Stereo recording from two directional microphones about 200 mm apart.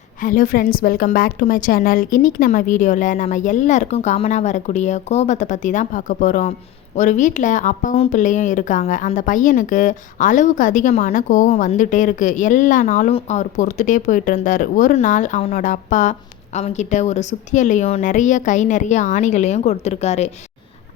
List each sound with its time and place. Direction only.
0.2 s a woman's voice: 40° left (ahead or behind)